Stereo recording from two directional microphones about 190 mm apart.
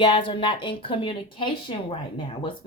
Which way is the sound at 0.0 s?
25° left (ahead or behind).